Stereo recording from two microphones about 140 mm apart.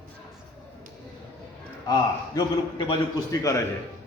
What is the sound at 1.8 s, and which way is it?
A man's voice, 25° left (ahead or behind).